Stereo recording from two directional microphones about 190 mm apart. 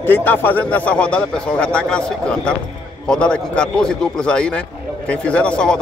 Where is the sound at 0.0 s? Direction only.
10° left (ahead or behind).